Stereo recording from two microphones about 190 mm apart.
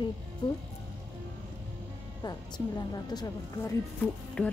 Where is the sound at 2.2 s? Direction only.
20° left (ahead or behind).